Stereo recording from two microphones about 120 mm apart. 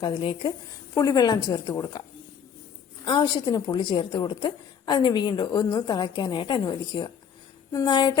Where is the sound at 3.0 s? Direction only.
35° left (ahead or behind).